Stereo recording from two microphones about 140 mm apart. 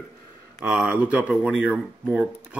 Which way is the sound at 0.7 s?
5° right (ahead or behind).